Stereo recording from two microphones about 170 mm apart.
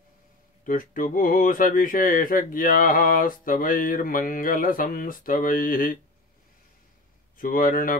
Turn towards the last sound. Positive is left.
turn(degrees=55)  # may be behind; listen again after turning